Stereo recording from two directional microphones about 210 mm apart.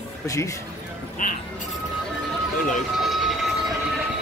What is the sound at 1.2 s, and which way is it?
Speech, 40° left (ahead or behind).